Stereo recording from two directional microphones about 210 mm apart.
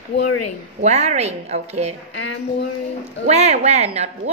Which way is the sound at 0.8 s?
30° right (ahead or behind).